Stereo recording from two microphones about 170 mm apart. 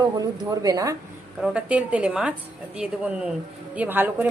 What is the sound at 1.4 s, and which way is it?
A woman's voice, 5° right (ahead or behind).